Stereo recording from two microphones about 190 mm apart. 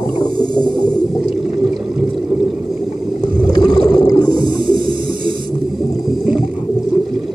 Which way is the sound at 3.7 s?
20° left (ahead or behind).